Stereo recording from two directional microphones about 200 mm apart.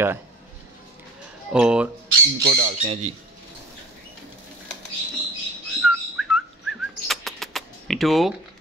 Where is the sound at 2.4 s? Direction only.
45° right (ahead or behind).